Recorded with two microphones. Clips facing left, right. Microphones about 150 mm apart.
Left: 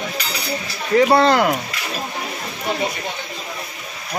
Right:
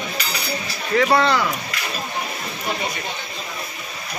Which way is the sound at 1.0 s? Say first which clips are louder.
Left 3 dB; 30° left (ahead or behind).